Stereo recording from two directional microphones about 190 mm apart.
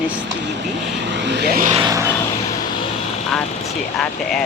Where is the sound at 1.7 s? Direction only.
20° right (ahead or behind).